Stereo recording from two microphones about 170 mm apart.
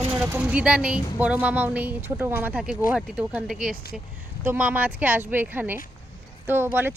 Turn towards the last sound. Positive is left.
turn(degrees=-10)  # may be behind; listen again after turning